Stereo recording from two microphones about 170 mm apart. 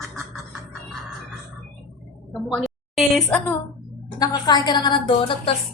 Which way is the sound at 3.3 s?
10° left (ahead or behind).